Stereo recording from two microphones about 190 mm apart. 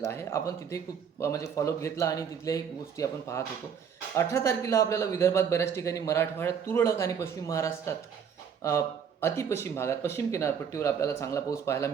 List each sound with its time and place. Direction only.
0.0 s a man's voice: 15° left (ahead or behind)
9.2 s a man's voice: 15° left (ahead or behind)